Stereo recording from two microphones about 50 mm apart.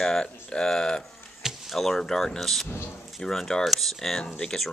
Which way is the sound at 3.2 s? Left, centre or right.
Centre.